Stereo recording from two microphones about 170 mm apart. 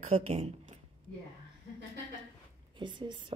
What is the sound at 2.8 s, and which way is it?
Speech, 25° right (ahead or behind).